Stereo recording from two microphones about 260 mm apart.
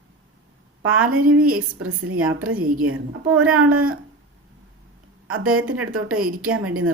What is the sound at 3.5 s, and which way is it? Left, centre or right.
Speech, right.